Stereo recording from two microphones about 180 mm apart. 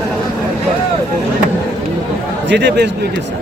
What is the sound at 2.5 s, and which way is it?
Speech, 75° right (ahead or behind).